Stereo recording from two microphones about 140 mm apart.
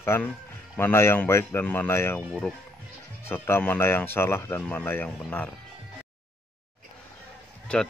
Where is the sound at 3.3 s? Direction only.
15° left (ahead or behind).